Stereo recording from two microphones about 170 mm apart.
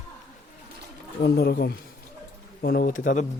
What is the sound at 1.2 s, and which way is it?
Speech, 70° left (ahead or behind).